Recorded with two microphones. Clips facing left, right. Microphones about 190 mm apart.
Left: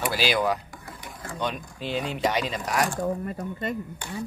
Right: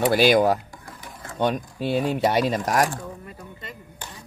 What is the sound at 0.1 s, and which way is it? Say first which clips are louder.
Speech: right 6 dB; 55° right (ahead or behind).